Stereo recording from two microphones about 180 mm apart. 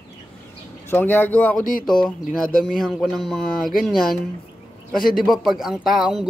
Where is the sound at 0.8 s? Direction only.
10° left (ahead or behind).